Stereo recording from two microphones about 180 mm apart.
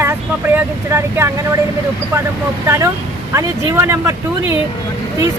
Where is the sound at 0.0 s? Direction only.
15° right (ahead or behind).